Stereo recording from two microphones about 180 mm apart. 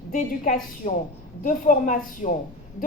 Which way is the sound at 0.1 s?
45° left (ahead or behind).